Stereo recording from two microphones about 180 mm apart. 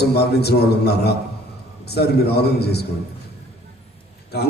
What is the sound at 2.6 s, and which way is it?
Speech, 65° left (ahead or behind).